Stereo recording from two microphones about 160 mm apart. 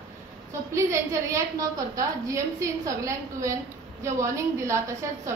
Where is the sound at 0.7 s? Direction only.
20° right (ahead or behind).